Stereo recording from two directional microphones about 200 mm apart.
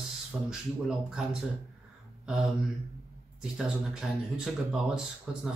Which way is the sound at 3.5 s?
5° right (ahead or behind).